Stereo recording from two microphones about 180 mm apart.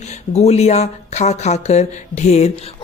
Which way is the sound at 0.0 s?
40° left (ahead or behind).